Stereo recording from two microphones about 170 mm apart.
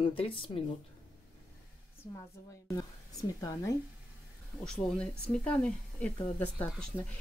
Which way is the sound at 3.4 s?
20° left (ahead or behind).